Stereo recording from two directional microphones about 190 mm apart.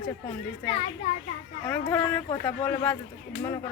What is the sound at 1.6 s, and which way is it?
Speech, 10° left (ahead or behind).